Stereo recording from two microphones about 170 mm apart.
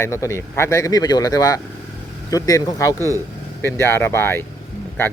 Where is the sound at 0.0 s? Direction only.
15° left (ahead or behind).